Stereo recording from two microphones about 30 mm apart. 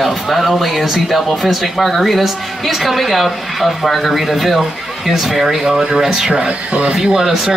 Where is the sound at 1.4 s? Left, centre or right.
Centre.